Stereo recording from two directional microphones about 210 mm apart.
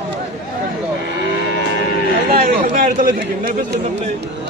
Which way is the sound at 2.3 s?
40° right (ahead or behind).